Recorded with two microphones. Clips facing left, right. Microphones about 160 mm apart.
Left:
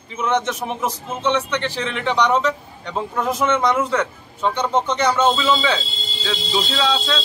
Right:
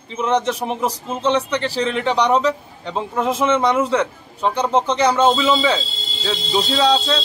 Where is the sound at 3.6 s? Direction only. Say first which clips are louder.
Right 2 dB; 25° right (ahead or behind).